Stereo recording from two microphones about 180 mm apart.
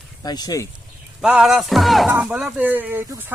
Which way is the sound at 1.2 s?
5° right (ahead or behind).